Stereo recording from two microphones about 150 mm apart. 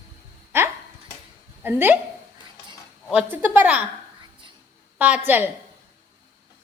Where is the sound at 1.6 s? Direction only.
15° right (ahead or behind).